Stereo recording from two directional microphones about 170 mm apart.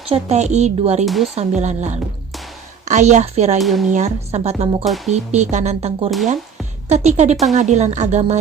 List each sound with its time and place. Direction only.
0.1 s speech: 40° right (ahead or behind)
1.0 s speech: centre (ahead or behind)
1.4 s a woman's voice: 40° right (ahead or behind)
3.6 s speech: centre (ahead or behind)
3.8 s a woman's voice: 45° right (ahead or behind)